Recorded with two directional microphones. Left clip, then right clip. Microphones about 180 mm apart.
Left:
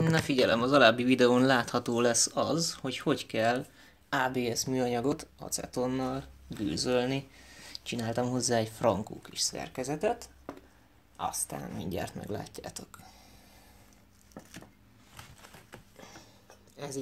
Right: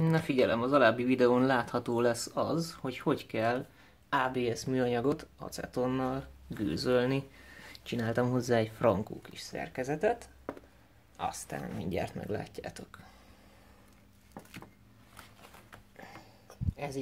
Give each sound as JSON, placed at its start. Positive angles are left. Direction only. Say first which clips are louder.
{"t": 0.1, "sound": "speech", "louder": "left 2 dB", "side_deg": 5}
{"t": 11.1, "sound": "speech", "louder": "left 1 dB", "side_deg": -5}
{"t": 16.7, "sound": "speech", "louder": "even", "side_deg": -10}